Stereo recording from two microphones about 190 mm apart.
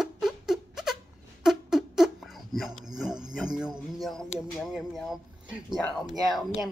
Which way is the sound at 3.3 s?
5° right (ahead or behind).